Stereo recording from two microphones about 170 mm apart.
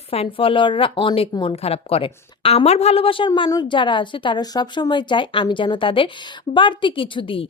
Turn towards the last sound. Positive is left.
turn(degrees=30)  # may be behind; listen again after turning